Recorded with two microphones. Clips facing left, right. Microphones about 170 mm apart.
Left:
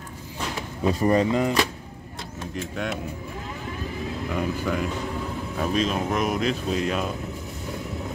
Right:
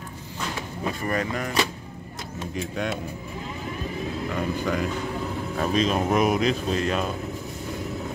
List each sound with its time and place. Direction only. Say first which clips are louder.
1.0 s speech: left 8 dB; 20° left (ahead or behind)
2.5 s speech: right 1 dB; centre (ahead or behind)
4.3 s speech: left 1 dB; 5° left (ahead or behind)
6.7 s speech: even; 5° left (ahead or behind)